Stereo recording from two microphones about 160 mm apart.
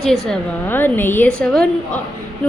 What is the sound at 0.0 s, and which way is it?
A woman's voice, centre (ahead or behind).